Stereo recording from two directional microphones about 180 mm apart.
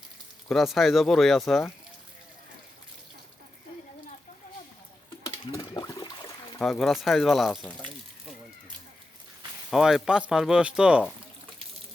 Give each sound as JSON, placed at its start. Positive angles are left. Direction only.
{"t": 0.4, "sound": "speech", "side_deg": 0}
{"t": 5.7, "sound": "a sound", "side_deg": 20}
{"t": 6.6, "sound": "speech", "side_deg": 0}
{"t": 9.6, "sound": "speech", "side_deg": 0}